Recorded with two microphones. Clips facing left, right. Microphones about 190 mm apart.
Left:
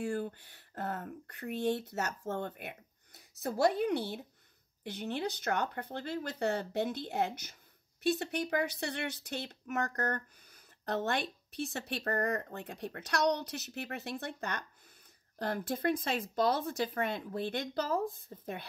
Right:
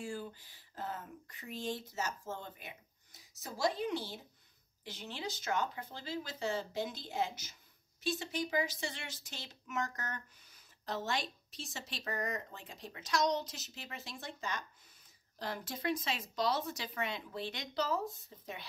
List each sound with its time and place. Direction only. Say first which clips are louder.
0.0 s speech: left 7 dB; 60° left (ahead or behind)